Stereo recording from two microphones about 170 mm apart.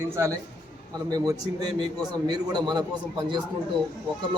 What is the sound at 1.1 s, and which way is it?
A man's voice, 25° right (ahead or behind).